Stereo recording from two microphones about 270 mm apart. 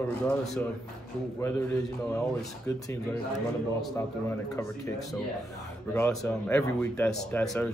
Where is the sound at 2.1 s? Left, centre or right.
Centre.